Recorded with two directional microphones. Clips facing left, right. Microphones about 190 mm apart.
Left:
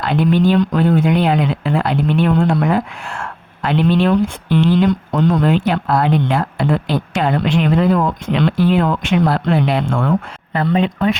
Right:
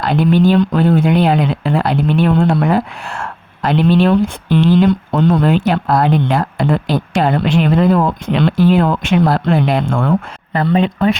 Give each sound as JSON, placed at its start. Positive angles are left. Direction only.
{"t": 0.0, "sound": "speech", "side_deg": -40}
{"t": 5.3, "sound": "speech", "side_deg": -40}